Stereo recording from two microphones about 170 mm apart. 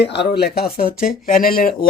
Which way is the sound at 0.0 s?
85° left.